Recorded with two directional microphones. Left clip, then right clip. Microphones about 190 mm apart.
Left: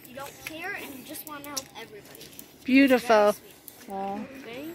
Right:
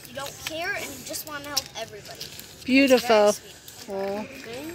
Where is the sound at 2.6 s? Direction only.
Centre (ahead or behind).